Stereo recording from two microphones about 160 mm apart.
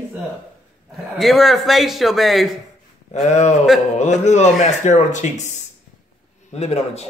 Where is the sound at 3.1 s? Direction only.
45° left (ahead or behind).